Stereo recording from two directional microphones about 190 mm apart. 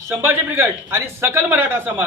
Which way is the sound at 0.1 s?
10° right (ahead or behind).